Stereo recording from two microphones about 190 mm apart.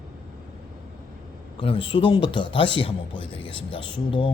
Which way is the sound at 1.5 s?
30° left (ahead or behind).